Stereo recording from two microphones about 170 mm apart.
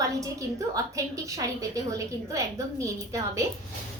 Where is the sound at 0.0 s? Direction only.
20° right (ahead or behind).